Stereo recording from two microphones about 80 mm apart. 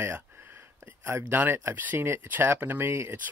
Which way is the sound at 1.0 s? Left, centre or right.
Right.